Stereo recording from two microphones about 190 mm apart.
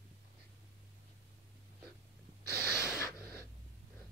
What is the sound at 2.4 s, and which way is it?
Gasp, 55° right (ahead or behind).